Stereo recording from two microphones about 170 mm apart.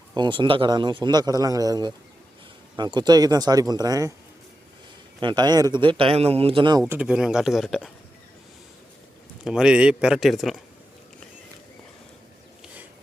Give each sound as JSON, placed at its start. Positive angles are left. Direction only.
{"t": 0.1, "sound": "a man's voice", "side_deg": -25}
{"t": 5.2, "sound": "a man's voice", "side_deg": -25}
{"t": 6.8, "sound": "a man's voice", "side_deg": -10}
{"t": 9.4, "sound": "a man's voice", "side_deg": -5}